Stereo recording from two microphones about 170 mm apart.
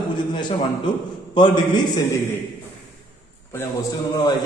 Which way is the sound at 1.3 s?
25° left (ahead or behind).